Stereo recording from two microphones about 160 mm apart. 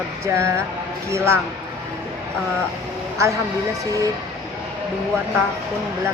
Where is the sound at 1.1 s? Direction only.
15° right (ahead or behind).